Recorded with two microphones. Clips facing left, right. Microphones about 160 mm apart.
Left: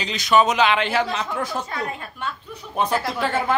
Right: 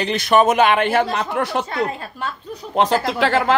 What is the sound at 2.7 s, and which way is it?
Speech, 90° right.